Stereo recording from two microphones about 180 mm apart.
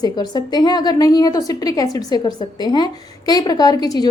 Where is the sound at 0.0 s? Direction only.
25° left (ahead or behind).